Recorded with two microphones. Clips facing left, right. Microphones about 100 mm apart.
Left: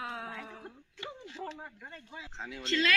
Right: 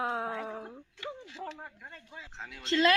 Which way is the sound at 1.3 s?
Centre (ahead or behind).